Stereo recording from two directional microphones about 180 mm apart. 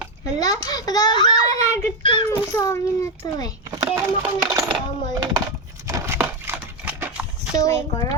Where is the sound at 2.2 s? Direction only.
15° left (ahead or behind).